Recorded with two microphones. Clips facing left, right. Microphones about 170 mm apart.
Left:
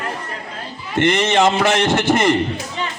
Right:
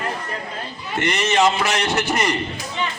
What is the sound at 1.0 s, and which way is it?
Speech, 50° left (ahead or behind).